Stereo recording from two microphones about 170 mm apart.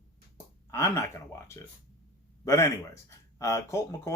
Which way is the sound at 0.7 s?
15° left (ahead or behind).